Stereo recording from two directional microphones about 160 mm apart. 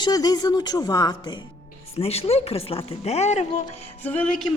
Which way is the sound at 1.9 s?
40° left (ahead or behind).